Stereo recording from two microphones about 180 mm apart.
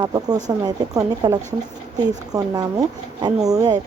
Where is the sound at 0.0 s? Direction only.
20° right (ahead or behind).